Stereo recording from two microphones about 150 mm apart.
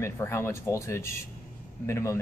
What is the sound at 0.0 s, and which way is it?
Speech, 15° left (ahead or behind).